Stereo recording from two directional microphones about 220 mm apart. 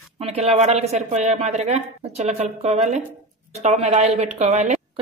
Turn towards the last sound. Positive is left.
turn(degrees=-30)  # may be behind; listen again after turning